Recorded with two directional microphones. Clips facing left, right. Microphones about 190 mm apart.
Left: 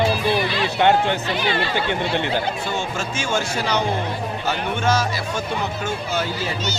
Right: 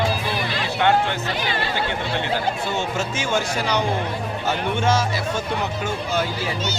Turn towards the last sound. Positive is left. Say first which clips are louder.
# even
turn(degrees=-25)  # may be behind; listen again after turning